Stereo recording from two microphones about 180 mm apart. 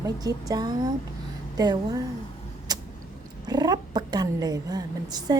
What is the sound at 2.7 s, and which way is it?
Vehicle, 20° right (ahead or behind).